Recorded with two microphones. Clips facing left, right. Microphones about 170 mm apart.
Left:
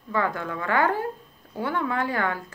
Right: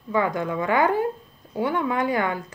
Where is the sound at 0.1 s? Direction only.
15° right (ahead or behind).